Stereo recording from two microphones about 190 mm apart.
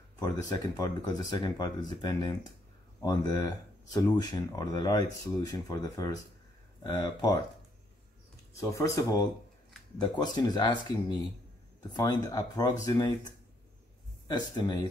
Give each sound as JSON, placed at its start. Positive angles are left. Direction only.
{"t": 0.2, "sound": "speech", "side_deg": 20}
{"t": 8.5, "sound": "speech", "side_deg": 15}
{"t": 14.2, "sound": "speech", "side_deg": 20}